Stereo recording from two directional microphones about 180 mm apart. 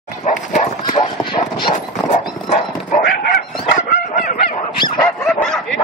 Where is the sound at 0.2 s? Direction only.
40° left (ahead or behind).